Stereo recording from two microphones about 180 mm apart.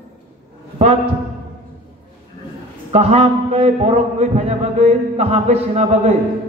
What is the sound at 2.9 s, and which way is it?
A man's voice, 35° right (ahead or behind).